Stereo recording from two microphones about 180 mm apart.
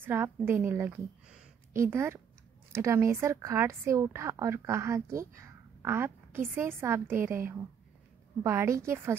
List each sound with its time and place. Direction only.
0.0 s a woman's voice: 10° right (ahead or behind)